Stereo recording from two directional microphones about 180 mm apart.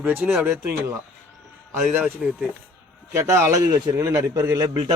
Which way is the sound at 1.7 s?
10° right (ahead or behind).